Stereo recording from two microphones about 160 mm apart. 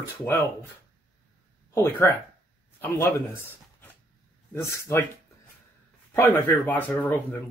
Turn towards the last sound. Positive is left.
turn(degrees=10)  # may be behind; listen again after turning